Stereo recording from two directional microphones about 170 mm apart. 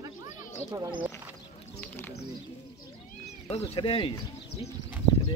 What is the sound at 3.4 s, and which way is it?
Speech, 35° left (ahead or behind).